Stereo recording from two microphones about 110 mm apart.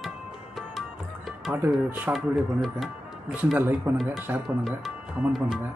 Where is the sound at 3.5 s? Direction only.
20° right (ahead or behind).